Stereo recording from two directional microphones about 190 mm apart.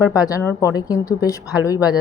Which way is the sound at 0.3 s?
15° left (ahead or behind).